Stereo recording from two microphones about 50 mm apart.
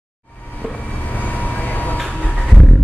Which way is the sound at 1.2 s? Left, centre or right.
Left.